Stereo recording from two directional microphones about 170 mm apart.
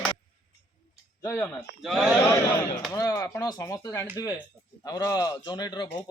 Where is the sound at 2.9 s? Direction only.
20° left (ahead or behind).